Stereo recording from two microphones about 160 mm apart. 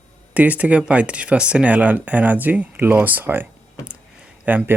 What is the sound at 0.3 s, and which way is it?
Speech, 10° right (ahead or behind).